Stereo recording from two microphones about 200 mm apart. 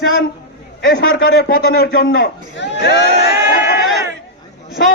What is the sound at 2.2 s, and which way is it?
Speech, 60° left (ahead or behind).